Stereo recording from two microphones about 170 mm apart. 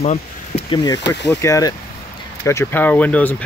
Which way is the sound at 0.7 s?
25° left (ahead or behind).